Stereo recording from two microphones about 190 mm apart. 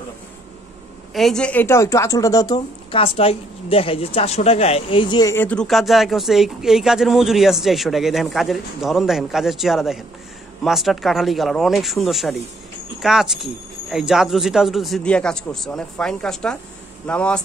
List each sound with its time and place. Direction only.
1.1 s a woman's voice: centre (ahead or behind); by 5.3 s 25° left (ahead or behind)
5.3 s speech: 10° left (ahead or behind)